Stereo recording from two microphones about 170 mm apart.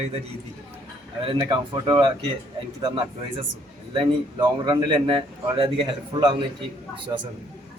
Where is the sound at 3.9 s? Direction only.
25° right (ahead or behind).